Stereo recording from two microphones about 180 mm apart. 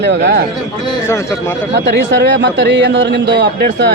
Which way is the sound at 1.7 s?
70° right (ahead or behind).